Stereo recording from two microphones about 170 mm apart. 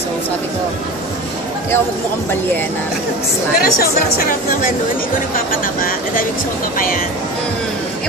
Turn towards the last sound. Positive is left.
turn(degrees=55)  # may be behind; listen again after turning